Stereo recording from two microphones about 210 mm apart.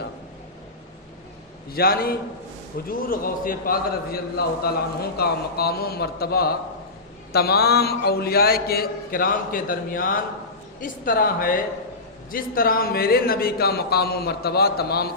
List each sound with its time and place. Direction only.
1.7 s a man's voice: 45° left (ahead or behind)